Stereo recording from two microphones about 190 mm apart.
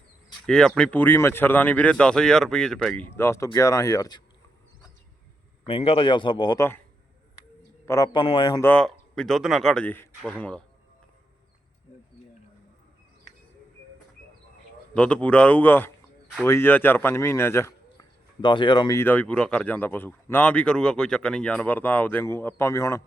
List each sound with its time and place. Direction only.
0.4 s speech: 5° left (ahead or behind)
5.6 s speech: 30° left (ahead or behind)
7.9 s speech: 20° left (ahead or behind)
8.6 s speech: 5° left (ahead or behind)
14.9 s speech: 5° left (ahead or behind)
18.4 s speech: 25° left (ahead or behind)